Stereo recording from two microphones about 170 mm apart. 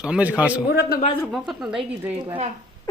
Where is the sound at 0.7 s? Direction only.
65° left (ahead or behind).